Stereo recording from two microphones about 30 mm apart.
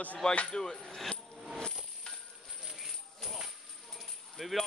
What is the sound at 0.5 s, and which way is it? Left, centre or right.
Speech, centre.